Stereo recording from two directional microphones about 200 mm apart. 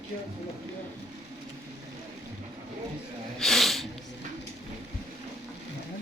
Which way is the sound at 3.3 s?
Centre (ahead or behind).